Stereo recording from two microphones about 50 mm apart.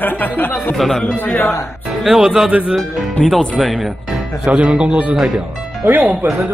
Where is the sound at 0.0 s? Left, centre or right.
Left.